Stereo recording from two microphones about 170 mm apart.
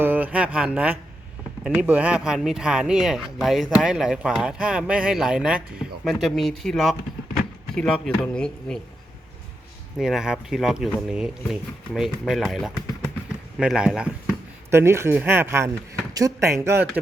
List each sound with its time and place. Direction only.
0.0 s speech: 10° right (ahead or behind)
10.0 s speech: centre (ahead or behind)
14.7 s speech: 15° right (ahead or behind)